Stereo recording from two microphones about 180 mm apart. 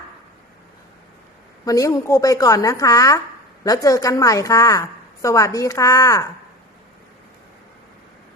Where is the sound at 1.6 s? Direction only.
20° left (ahead or behind).